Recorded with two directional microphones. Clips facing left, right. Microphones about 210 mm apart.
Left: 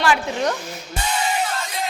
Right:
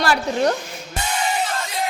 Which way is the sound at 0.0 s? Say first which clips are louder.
Right 1 dB; 40° right (ahead or behind).